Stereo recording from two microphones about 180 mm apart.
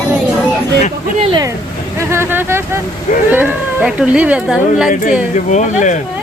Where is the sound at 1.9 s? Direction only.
15° right (ahead or behind).